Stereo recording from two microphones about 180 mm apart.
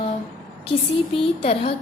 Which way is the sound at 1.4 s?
35° left (ahead or behind).